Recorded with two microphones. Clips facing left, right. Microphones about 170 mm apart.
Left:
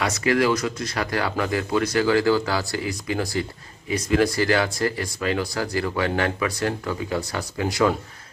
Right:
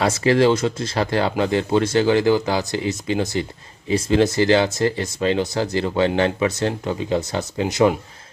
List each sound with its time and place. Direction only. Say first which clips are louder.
0.0 s speech: right 5 dB; 30° right (ahead or behind)